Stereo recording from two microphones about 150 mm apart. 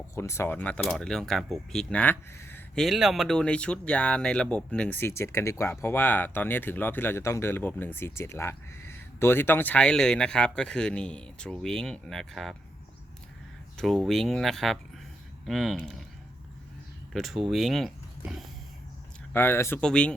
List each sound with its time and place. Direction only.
0.2 s speech: 15° left (ahead or behind)
2.8 s speech: centre (ahead or behind)
13.7 s speech: centre (ahead or behind)
17.1 s speech: centre (ahead or behind)
19.3 s speech: 15° left (ahead or behind)